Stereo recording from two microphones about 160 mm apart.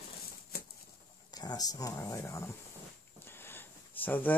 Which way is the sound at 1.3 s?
25° left (ahead or behind).